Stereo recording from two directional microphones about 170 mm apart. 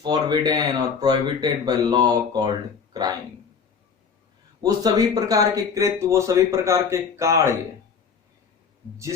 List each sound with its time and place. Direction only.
0.0 s speech: 25° right (ahead or behind)
4.6 s speech: 20° right (ahead or behind)